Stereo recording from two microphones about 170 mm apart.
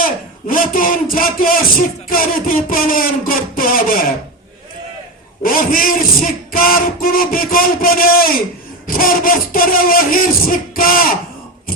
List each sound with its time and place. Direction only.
0.0 s a man's voice: 55° left (ahead or behind)
5.4 s speech: 55° left (ahead or behind)